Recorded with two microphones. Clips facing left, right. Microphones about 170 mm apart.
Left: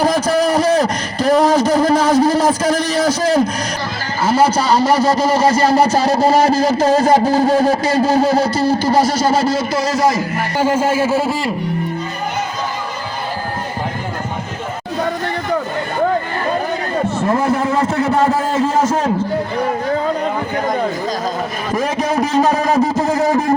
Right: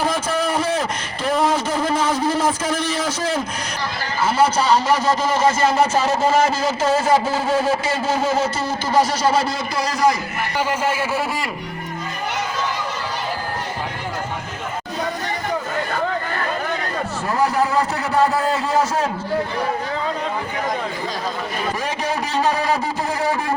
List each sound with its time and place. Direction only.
0.0 s a sound: 40° left (ahead or behind)
4.4 s speech: 35° left (ahead or behind)
10.9 s a man's voice: 30° left (ahead or behind)
17.7 s speech: 35° right (ahead or behind)
18.0 s speech: 35° left (ahead or behind)
22.1 s a sound: 40° left (ahead or behind)